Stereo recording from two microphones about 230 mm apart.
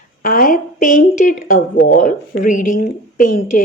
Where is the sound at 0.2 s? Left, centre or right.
Left.